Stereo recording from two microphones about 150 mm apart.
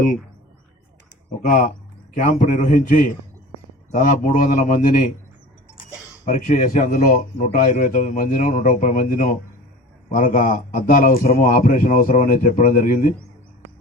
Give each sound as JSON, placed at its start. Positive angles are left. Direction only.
{"t": 1.4, "sound": "a man's voice", "side_deg": 60}
{"t": 6.2, "sound": "a man's voice", "side_deg": 60}
{"t": 7.3, "sound": "a man's voice", "side_deg": 50}